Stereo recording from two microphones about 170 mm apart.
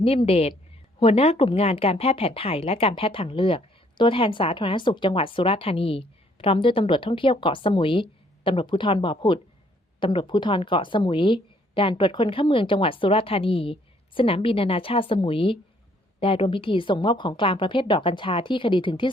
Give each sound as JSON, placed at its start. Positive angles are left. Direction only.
{"t": 0.0, "sound": "a woman's voice", "side_deg": 35}